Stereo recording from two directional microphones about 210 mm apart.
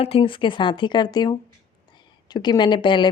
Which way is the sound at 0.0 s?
25° left (ahead or behind).